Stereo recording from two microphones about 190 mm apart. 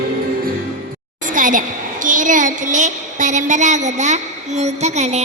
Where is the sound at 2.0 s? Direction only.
45° right (ahead or behind).